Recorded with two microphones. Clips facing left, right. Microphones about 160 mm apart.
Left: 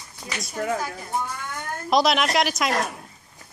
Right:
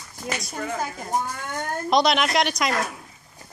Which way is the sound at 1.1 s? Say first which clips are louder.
Right 2 dB; 40° right (ahead or behind).